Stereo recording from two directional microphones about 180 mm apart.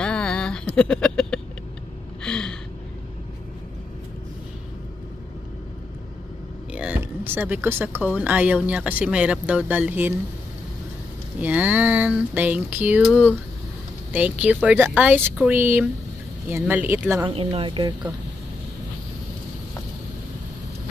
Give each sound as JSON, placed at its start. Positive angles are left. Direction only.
{"t": 0.0, "sound": "a sound", "side_deg": 5}
{"t": 2.2, "sound": "gasp", "side_deg": 5}
{"t": 6.7, "sound": "speech", "side_deg": -5}
{"t": 11.3, "sound": "speech", "side_deg": -10}
{"t": 17.3, "sound": "speech", "side_deg": -30}